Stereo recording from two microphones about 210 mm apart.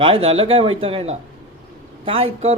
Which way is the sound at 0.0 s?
30° right (ahead or behind).